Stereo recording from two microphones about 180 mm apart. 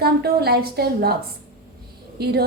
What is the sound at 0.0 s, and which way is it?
A woman's voice, 60° right (ahead or behind).